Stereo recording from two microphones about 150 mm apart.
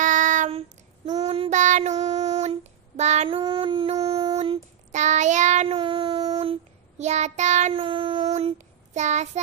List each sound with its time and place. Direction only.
0.0 s child singing: 60° right (ahead or behind)
0.5 s child singing: 45° right (ahead or behind)
1.6 s child singing: 55° right (ahead or behind)
3.3 s female singing: 35° right (ahead or behind); by 5.8 s 55° right (ahead or behind)
5.8 s child singing: 30° right (ahead or behind); by 7.7 s 55° right (ahead or behind)
7.7 s child singing: 35° right (ahead or behind)